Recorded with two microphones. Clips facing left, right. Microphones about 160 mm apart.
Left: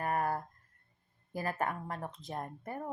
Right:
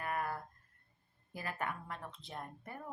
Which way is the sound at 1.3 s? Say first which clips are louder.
Left 6 dB; 40° left (ahead or behind).